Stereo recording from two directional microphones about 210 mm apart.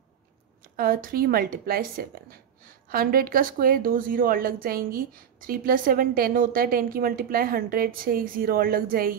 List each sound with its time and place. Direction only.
0.7 s speech: 45° right (ahead or behind)